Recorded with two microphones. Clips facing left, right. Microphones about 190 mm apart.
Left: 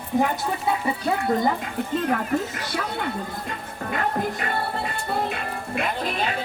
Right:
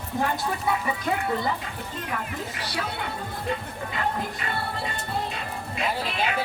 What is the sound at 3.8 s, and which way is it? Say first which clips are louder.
Speech: left 4 dB; 50° left (ahead or behind).